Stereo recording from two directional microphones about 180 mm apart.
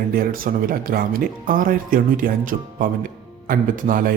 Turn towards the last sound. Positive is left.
turn(degrees=-50)  # may be behind; listen again after turning